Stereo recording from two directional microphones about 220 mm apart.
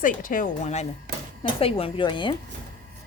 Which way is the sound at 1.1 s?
45° right (ahead or behind).